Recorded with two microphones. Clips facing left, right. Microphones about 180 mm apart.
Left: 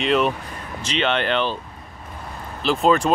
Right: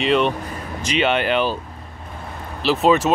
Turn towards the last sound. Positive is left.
turn(degrees=0)  # may be behind; listen again after turning